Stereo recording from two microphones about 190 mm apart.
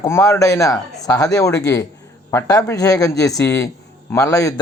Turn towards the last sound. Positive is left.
turn(degrees=15)  # may be behind; listen again after turning